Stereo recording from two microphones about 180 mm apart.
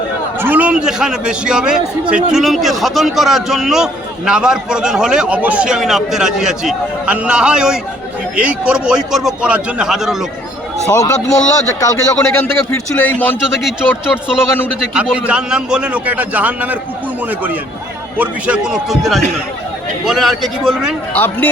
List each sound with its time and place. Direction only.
0.4 s a man's voice: 10° right (ahead or behind)
10.9 s a man's voice: 20° left (ahead or behind)
13.7 s a man's voice: 5° right (ahead or behind)
18.2 s a man's voice: 5° right (ahead or behind)